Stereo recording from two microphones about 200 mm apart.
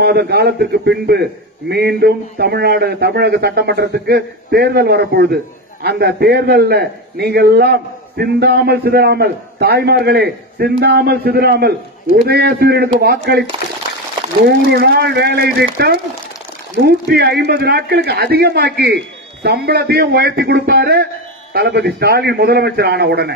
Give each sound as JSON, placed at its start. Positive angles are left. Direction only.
{"t": 0.0, "sound": "a man's voice", "side_deg": -55}